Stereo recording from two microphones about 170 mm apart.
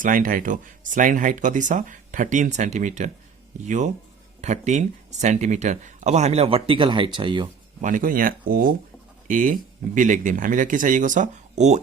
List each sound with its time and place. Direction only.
0.0 s speech: 55° right (ahead or behind); by 7.4 s 30° right (ahead or behind)
7.8 s speech: 50° right (ahead or behind)